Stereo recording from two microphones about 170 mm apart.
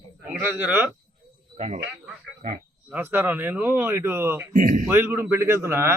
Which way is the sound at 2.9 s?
10° right (ahead or behind).